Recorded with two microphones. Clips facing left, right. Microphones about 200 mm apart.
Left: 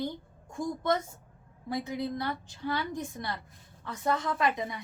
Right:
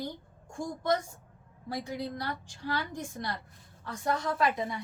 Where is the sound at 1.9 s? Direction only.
20° left (ahead or behind).